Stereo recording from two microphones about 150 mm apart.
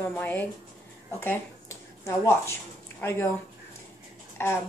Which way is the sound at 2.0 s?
15° left (ahead or behind).